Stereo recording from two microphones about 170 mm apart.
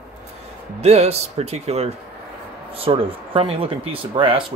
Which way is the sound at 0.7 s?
40° right (ahead or behind).